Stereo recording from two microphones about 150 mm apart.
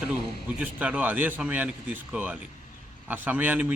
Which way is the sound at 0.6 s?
10° right (ahead or behind).